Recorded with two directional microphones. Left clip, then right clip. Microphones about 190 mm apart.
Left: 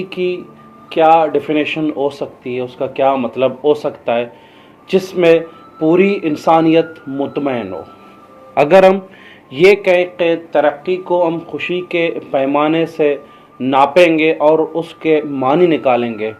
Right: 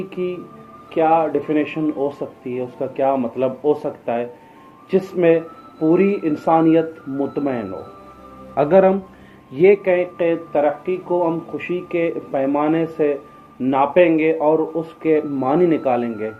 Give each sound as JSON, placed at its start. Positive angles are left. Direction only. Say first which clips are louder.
{"t": 0.1, "sound": "speech", "louder": "left 6 dB", "side_deg": 35}